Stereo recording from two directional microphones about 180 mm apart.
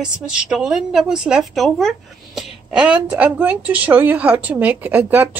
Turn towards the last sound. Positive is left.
turn(degrees=-10)  # may be behind; listen again after turning